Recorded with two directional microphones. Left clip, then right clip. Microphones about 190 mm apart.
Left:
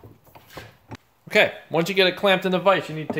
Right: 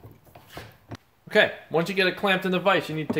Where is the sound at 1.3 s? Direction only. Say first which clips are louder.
Left 2 dB; 40° left (ahead or behind).